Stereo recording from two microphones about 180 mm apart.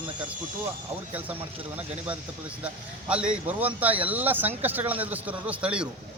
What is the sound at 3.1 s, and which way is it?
A man's voice, 5° right (ahead or behind).